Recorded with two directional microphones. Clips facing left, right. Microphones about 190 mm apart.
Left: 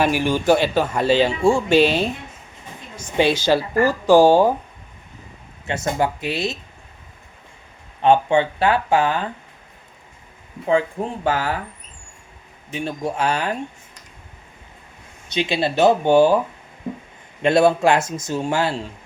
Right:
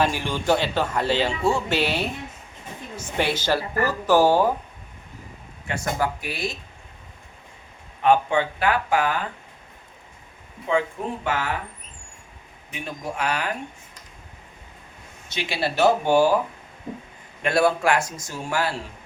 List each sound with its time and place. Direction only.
0.0 s speech: 10° left (ahead or behind)
5.6 s a man's voice: 25° left (ahead or behind)
8.0 s a man's voice: 25° left (ahead or behind)
10.7 s speech: 35° left (ahead or behind)
12.7 s a man's voice: 30° left (ahead or behind)
15.3 s a man's voice: 20° left (ahead or behind)
17.4 s a man's voice: 25° left (ahead or behind)